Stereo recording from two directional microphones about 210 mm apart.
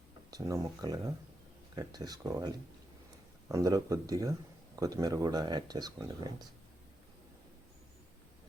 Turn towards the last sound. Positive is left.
turn(degrees=-15)  # may be behind; listen again after turning